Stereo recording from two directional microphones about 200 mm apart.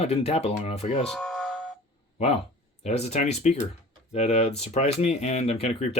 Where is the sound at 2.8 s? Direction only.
35° left (ahead or behind).